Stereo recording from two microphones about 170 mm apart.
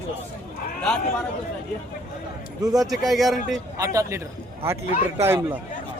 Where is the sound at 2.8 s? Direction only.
Centre (ahead or behind).